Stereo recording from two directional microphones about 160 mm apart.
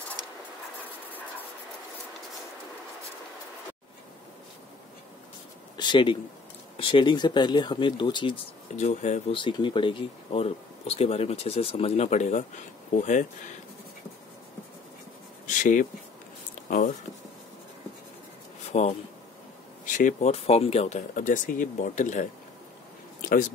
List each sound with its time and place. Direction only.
5.8 s speech: 30° left (ahead or behind)
8.7 s speech: 45° left (ahead or behind)
9.3 s speech: 30° left (ahead or behind); by 13.3 s 50° left (ahead or behind)
15.4 s speech: 50° left (ahead or behind)
18.7 s speech: 45° left (ahead or behind)